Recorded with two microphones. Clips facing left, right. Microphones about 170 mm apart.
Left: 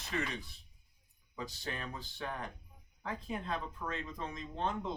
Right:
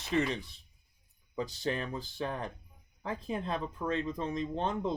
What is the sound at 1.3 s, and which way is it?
Speech, 25° right (ahead or behind).